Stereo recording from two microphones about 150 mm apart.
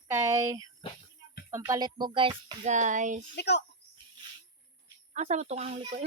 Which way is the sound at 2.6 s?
55° right (ahead or behind).